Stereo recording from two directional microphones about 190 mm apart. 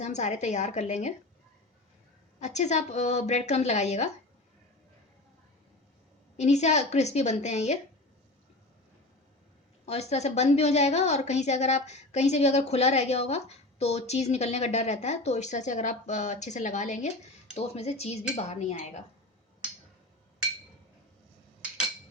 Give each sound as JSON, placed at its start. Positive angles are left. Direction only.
{"t": 0.0, "sound": "a woman's voice", "side_deg": 35}
{"t": 2.4, "sound": "a woman's voice", "side_deg": 35}
{"t": 6.3, "sound": "a woman's voice", "side_deg": 35}
{"t": 9.8, "sound": "a woman's voice", "side_deg": 35}